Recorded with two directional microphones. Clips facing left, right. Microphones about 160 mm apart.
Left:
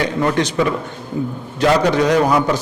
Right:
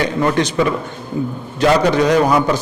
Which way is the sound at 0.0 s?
15° right (ahead or behind).